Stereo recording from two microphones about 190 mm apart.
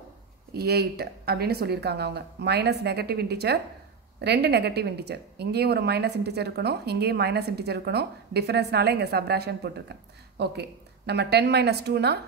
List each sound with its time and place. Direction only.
0.5 s a woman's voice: 55° right (ahead or behind)